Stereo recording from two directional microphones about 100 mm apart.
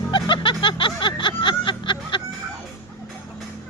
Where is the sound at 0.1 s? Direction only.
55° left (ahead or behind).